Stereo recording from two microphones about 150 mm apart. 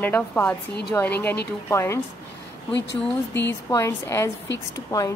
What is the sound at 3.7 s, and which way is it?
A woman's voice, 20° left (ahead or behind).